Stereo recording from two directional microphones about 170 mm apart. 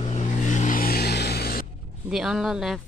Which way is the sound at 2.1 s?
5° right (ahead or behind).